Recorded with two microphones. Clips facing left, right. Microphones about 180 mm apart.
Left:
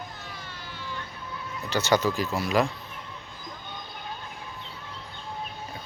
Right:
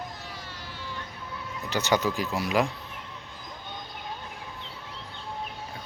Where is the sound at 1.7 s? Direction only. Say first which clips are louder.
Left 2 dB; 15° right (ahead or behind).